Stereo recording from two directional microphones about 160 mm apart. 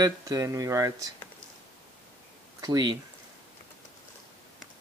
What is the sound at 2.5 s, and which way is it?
Speech, 25° right (ahead or behind).